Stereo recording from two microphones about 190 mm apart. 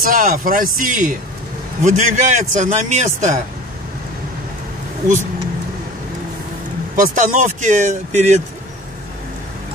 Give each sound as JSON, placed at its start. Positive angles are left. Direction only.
{"t": 0.0, "sound": "a man's voice", "side_deg": -45}
{"t": 7.0, "sound": "a man's voice", "side_deg": -45}